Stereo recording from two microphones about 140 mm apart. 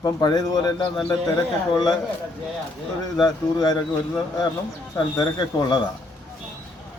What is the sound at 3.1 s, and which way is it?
Speech, 30° left (ahead or behind).